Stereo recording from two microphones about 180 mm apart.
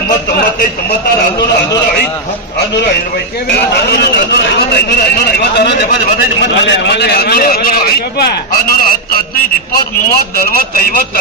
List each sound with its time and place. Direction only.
3.9 s a man's voice: 65° left (ahead or behind)
6.5 s a man's voice: 80° left; by 11.1 s 55° left (ahead or behind)